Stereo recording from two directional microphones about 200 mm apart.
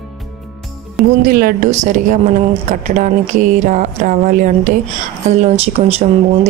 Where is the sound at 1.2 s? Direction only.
45° right (ahead or behind); by 6.1 s 30° right (ahead or behind).